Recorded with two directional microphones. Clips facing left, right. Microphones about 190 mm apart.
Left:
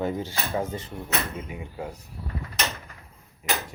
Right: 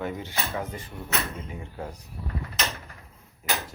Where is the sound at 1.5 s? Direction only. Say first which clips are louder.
Left 2 dB; 10° left (ahead or behind).